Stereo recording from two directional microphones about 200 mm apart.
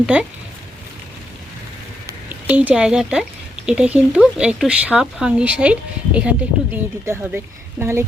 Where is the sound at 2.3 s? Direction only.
10° right (ahead or behind).